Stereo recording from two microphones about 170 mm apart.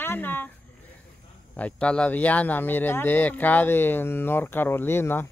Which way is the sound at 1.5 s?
5° left (ahead or behind).